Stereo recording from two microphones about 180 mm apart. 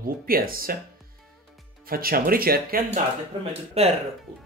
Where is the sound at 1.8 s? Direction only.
55° right (ahead or behind).